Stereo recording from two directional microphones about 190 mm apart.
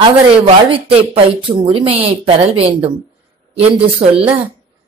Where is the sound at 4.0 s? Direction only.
30° right (ahead or behind).